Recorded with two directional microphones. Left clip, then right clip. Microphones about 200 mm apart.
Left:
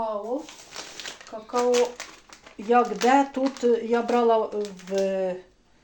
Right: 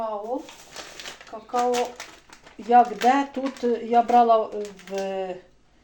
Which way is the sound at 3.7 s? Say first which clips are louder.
Right 6 dB; 25° left (ahead or behind).